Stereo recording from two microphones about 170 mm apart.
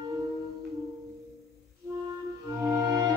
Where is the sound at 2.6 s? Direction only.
20° right (ahead or behind).